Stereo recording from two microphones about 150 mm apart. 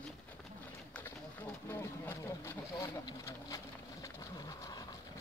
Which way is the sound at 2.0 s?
15° left (ahead or behind).